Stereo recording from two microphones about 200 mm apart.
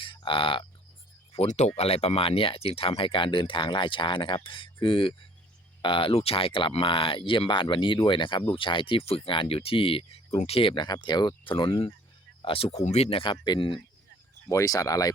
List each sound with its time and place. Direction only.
0.0 s speech: 25° left (ahead or behind)